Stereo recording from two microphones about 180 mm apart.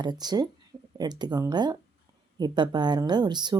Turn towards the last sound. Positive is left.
turn(degrees=-25)  # may be behind; listen again after turning